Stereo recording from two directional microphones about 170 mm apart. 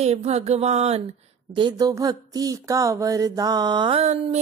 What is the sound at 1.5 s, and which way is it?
Speech, 25° right (ahead or behind).